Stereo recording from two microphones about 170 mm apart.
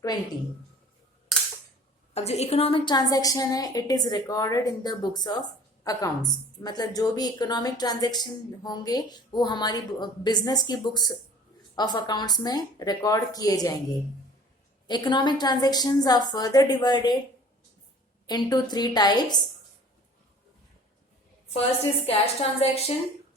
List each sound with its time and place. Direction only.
0.1 s a woman's voice: 25° left (ahead or behind)
2.1 s a woman's voice: 40° left (ahead or behind); by 13.7 s 20° left (ahead or behind)
14.8 s a woman's voice: 25° left (ahead or behind)
18.3 s a woman's voice: 25° left (ahead or behind)
22.0 s a woman's voice: 35° left (ahead or behind)